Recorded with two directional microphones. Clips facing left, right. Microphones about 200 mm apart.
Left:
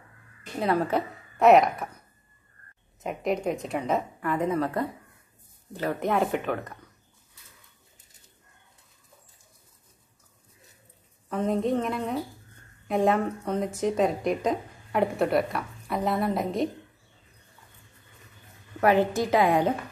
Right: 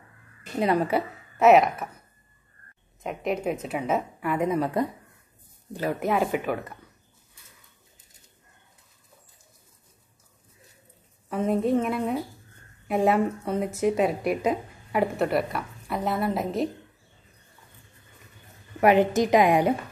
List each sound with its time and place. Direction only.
0.6 s a woman's voice: 15° right (ahead or behind)
3.0 s a woman's voice: centre (ahead or behind)
11.2 s a woman's voice: 5° right (ahead or behind)
18.8 s a woman's voice: 15° right (ahead or behind)